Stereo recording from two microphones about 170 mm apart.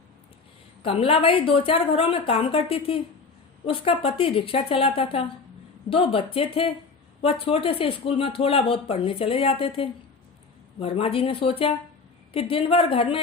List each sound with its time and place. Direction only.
0.8 s speech: 35° left (ahead or behind)